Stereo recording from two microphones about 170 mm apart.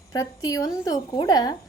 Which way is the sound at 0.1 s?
20° left (ahead or behind).